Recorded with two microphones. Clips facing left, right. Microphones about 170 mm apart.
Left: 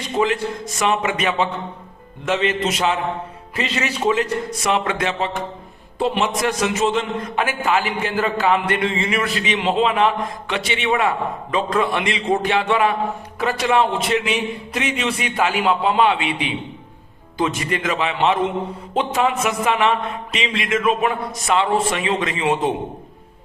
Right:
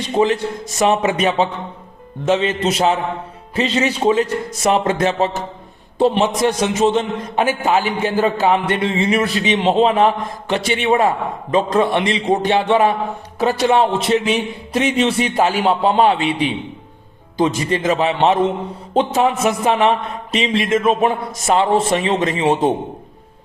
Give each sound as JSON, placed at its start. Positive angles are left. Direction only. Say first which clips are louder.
{"t": 0.8, "sound": "a man's voice", "louder": "right 5 dB", "side_deg": -35}
{"t": 6.0, "sound": "a man's voice", "louder": "right 5 dB", "side_deg": -30}
{"t": 10.5, "sound": "a man's voice", "louder": "right 6 dB", "side_deg": -45}
{"t": 10.8, "sound": "a man's voice", "louder": "right 3 dB", "side_deg": -30}